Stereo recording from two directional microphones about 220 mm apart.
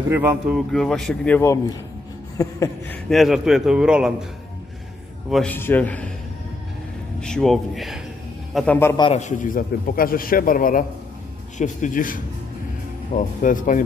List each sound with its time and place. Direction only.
0.1 s a man's voice: 5° right (ahead or behind); by 3.0 s 15° left (ahead or behind)
3.1 s a man's voice: centre (ahead or behind)
5.3 s a man's voice: 5° left (ahead or behind)
7.2 s a man's voice: 5° left (ahead or behind)
9.0 s a man's voice: 30° left (ahead or behind)